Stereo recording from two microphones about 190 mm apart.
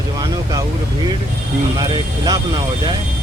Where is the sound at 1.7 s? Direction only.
20° right (ahead or behind).